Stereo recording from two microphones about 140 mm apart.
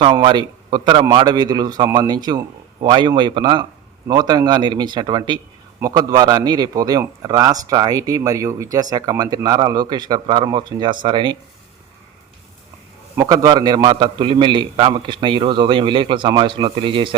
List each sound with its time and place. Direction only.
0.0 s a man's voice: 35° right (ahead or behind)
13.1 s a man's voice: 25° right (ahead or behind)